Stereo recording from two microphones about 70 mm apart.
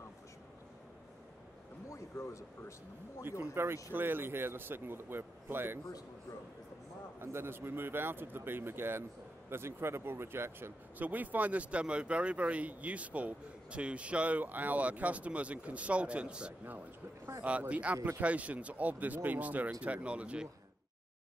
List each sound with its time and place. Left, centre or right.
1.9 s a sound: left
3.3 s speech: right
7.2 s speech: right
11.1 s speech: right